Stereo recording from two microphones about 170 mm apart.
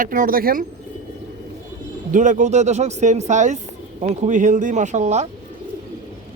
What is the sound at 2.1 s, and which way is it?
Speech, 50° right (ahead or behind).